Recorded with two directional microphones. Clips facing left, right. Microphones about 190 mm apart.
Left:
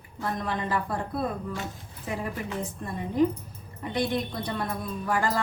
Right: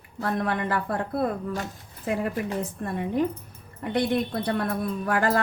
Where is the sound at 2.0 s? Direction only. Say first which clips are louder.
Right 5 dB; 60° right (ahead or behind).